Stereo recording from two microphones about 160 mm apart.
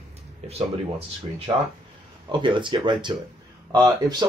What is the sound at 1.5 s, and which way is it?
Speech, 25° right (ahead or behind).